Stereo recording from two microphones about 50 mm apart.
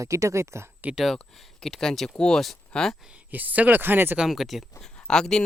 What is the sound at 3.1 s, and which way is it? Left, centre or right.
Speech, right.